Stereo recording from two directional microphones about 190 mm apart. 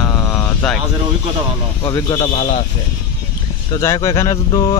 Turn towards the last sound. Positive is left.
turn(degrees=20)  # may be behind; listen again after turning